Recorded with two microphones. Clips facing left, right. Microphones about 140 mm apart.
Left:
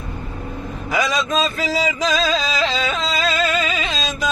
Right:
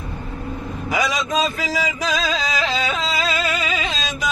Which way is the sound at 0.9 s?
10° right (ahead or behind).